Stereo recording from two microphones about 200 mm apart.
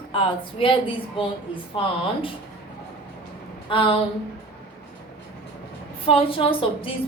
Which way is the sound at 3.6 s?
25° left (ahead or behind).